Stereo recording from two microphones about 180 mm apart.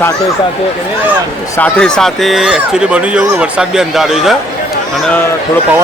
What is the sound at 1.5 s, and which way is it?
Speech, 5° left (ahead or behind).